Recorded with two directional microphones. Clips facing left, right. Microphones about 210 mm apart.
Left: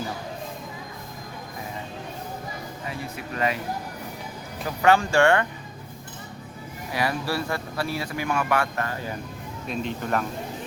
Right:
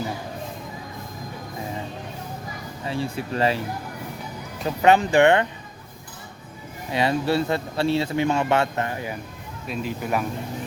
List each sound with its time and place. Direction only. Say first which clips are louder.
2.8 s speech: right 9 dB; 30° right (ahead or behind)
4.6 s speech: right 3 dB; 20° right (ahead or behind)
6.9 s speech: right 5 dB; 25° right (ahead or behind)
9.6 s speech: right 1 dB; 5° right (ahead or behind)